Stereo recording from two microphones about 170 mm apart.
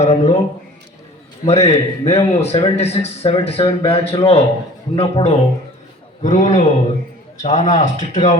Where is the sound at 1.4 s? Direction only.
40° left (ahead or behind).